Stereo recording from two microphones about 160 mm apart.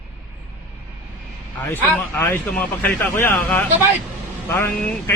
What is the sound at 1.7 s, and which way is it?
A man's voice, 10° left (ahead or behind).